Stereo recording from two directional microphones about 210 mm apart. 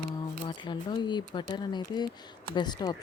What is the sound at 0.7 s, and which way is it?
Speech, 20° left (ahead or behind).